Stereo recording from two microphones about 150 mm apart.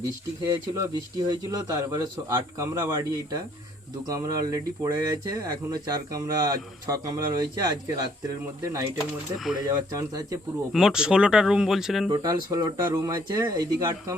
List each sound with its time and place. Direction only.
0.4 s speech: 25° right (ahead or behind)
10.7 s speech: 5° right (ahead or behind)
12.1 s speech: 25° right (ahead or behind)